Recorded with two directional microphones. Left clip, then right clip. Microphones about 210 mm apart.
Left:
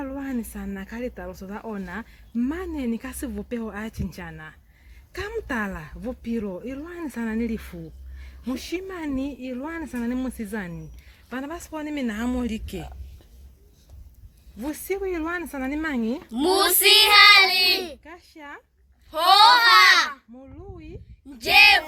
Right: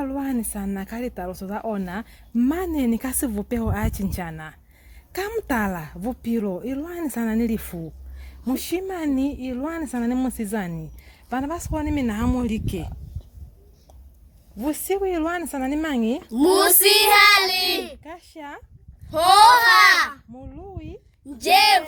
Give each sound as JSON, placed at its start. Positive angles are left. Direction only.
{"t": 0.0, "sound": "speech", "side_deg": -50}
{"t": 14.6, "sound": "a child's voice", "side_deg": -45}
{"t": 18.0, "sound": "speech", "side_deg": -45}
{"t": 19.1, "sound": "a child's voice", "side_deg": -30}